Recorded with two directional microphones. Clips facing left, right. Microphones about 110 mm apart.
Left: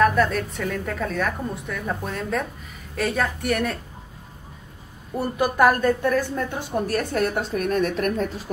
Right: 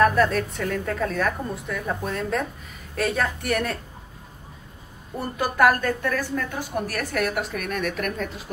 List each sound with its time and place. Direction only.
0.0 s a woman's voice: centre (ahead or behind)
5.4 s a woman's voice: 15° left (ahead or behind); by 8.3 s 35° left (ahead or behind)